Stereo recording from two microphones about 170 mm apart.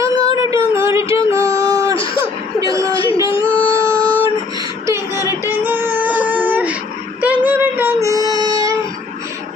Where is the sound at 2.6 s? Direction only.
20° right (ahead or behind).